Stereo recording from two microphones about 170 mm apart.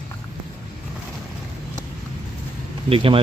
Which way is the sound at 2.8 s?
35° right (ahead or behind).